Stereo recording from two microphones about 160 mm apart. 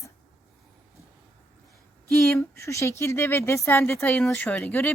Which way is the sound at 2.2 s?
15° left (ahead or behind).